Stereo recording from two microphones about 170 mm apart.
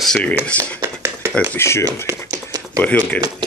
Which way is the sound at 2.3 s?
20° right (ahead or behind).